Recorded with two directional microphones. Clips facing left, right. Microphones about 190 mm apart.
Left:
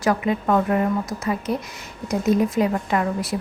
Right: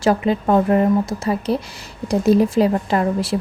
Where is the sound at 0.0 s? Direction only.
30° right (ahead or behind).